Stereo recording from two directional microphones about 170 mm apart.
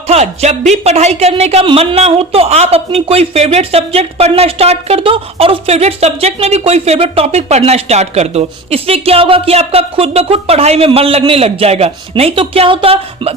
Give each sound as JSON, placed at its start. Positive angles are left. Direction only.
{"t": 0.1, "sound": "speech", "side_deg": -40}